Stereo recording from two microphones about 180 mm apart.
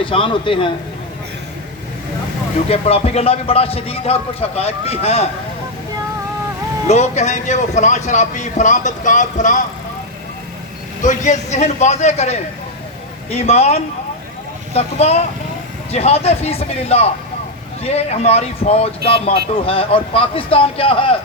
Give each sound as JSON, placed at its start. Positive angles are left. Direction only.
{"t": 0.0, "sound": "a man's voice", "side_deg": 30}
{"t": 2.6, "sound": "a man's voice", "side_deg": 35}
{"t": 6.8, "sound": "a man's voice", "side_deg": 40}
{"t": 11.0, "sound": "a man's voice", "side_deg": 40}